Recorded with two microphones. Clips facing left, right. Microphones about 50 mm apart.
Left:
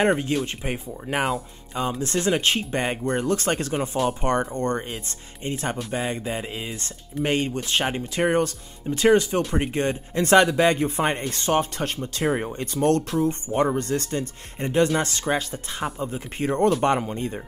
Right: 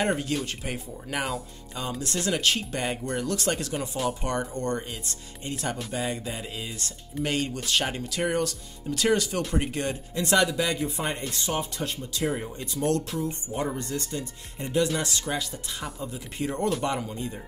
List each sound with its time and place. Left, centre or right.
0.3 s speech: left
9.4 s speech: centre
9.7 s speech: left
10.2 s speech: left